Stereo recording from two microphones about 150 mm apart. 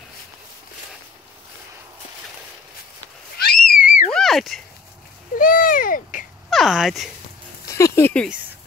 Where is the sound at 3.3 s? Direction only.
80° left; by 4.1 s 65° left (ahead or behind).